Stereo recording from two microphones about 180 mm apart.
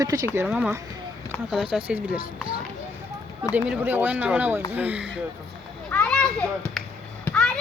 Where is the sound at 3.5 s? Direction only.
10° right (ahead or behind).